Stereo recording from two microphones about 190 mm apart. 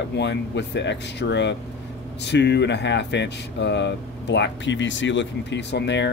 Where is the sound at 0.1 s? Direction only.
65° left (ahead or behind).